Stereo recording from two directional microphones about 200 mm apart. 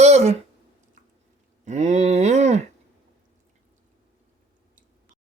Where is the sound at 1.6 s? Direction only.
35° right (ahead or behind).